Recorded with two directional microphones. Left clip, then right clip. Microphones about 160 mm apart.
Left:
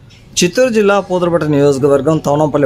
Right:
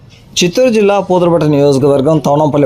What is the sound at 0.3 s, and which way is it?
A man's voice, 10° right (ahead or behind).